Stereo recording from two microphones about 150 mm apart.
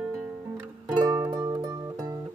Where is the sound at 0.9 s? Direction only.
25° right (ahead or behind).